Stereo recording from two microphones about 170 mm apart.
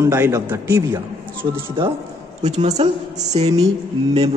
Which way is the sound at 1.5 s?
30° right (ahead or behind).